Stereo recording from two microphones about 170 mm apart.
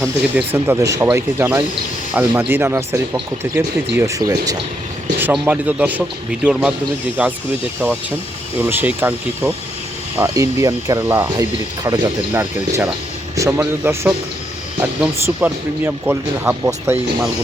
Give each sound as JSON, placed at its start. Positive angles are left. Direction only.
{"t": 0.3, "sound": "speech", "side_deg": -10}
{"t": 5.2, "sound": "speech", "side_deg": -10}
{"t": 8.5, "sound": "speech", "side_deg": -10}
{"t": 12.3, "sound": "a man's voice", "side_deg": -10}